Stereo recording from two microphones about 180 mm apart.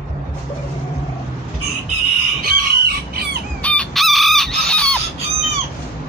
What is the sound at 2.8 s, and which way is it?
Chicken, 60° right (ahead or behind).